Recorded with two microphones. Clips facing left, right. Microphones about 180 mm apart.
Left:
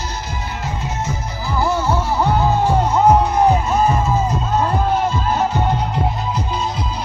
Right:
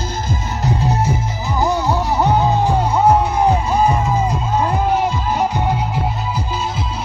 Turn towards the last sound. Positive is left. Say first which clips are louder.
# even
turn(degrees=-5)  # may be behind; listen again after turning